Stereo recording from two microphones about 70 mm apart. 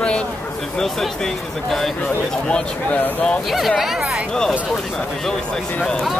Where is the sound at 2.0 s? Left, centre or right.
Centre.